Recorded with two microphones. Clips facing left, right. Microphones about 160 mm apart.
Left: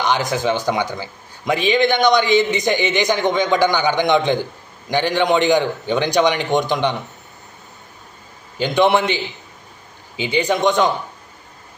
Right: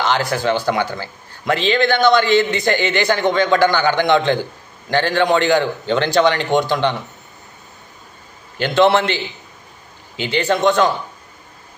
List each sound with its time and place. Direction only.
0.0 s speech: 15° left (ahead or behind)
8.5 s speech: 15° left (ahead or behind)